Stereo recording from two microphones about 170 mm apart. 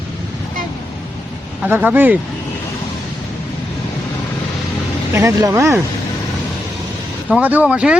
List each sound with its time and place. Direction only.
1.6 s speech: 10° right (ahead or behind)
5.1 s speech: 15° right (ahead or behind)
7.3 s speech: 10° right (ahead or behind)